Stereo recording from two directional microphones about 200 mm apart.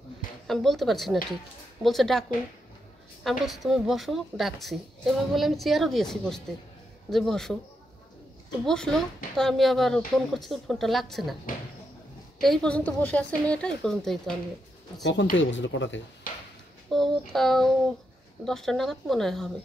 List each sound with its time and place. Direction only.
0.5 s a woman's voice: centre (ahead or behind)
3.3 s a woman's voice: centre (ahead or behind)
8.6 s a woman's voice: 5° left (ahead or behind)
12.4 s a woman's voice: centre (ahead or behind)
15.3 s speech: 65° left (ahead or behind)
16.3 s a sound: 45° left (ahead or behind)
16.9 s a woman's voice: centre (ahead or behind)